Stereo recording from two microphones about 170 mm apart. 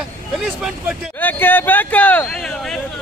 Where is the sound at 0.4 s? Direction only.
5° right (ahead or behind).